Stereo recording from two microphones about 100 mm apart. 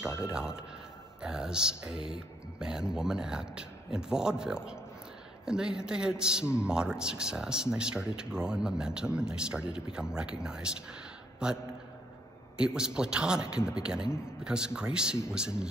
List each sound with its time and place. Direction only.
0.3 s speech: 5° right (ahead or behind)